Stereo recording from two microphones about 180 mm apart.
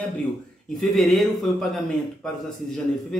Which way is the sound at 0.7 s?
Centre (ahead or behind).